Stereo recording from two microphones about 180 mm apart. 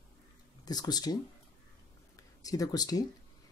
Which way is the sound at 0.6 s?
20° left (ahead or behind).